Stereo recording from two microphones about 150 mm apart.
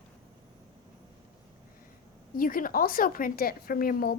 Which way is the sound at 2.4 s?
70° left (ahead or behind).